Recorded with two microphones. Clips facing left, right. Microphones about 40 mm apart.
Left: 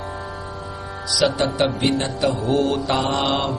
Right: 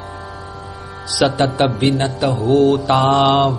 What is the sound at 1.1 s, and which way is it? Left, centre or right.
Mantra, centre.